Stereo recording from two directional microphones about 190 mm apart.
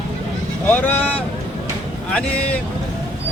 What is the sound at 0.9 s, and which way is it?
Speech, 10° left (ahead or behind).